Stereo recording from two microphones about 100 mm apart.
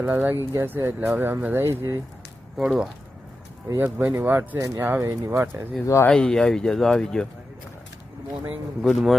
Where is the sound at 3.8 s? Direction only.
20° right (ahead or behind).